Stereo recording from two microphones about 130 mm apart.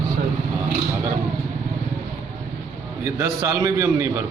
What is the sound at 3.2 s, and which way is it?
Speech, 25° right (ahead or behind).